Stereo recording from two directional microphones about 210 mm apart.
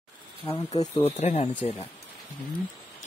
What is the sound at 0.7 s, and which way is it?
Speech, 20° left (ahead or behind).